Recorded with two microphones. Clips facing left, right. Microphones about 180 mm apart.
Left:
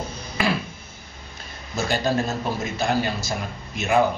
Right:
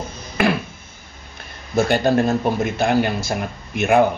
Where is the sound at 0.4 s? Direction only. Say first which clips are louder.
Right 5 dB; 55° right (ahead or behind).